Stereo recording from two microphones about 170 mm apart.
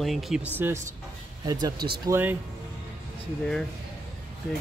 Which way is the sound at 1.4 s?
20° right (ahead or behind).